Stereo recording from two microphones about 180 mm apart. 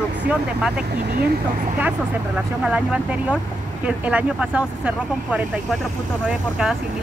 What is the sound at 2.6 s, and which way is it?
Speech, 5° right (ahead or behind).